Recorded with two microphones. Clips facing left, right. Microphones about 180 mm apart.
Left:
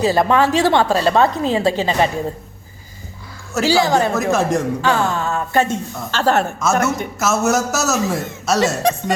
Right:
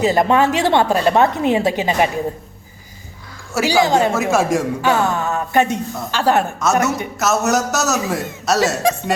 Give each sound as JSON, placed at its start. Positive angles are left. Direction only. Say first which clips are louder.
{"t": 0.0, "sound": "a woman's voice", "louder": "even", "side_deg": -20}
{"t": 3.5, "sound": "a woman's voice", "louder": "even", "side_deg": -15}
{"t": 4.1, "sound": "a woman's voice", "louder": "right 1 dB", "side_deg": -10}
{"t": 4.9, "sound": "a woman's voice", "louder": "right 2 dB", "side_deg": -20}
{"t": 6.6, "sound": "a man's voice", "louder": "even", "side_deg": 0}